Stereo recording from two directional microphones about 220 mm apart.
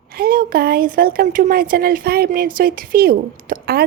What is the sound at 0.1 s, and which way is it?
Speech, 40° right (ahead or behind).